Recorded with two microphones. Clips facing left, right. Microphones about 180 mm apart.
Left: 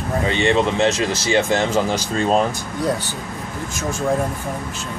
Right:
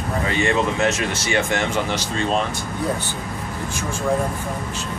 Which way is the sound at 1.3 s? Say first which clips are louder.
Left 4 dB; 35° left (ahead or behind).